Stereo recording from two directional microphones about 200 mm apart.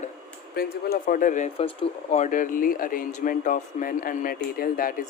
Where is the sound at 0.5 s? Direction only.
50° left (ahead or behind).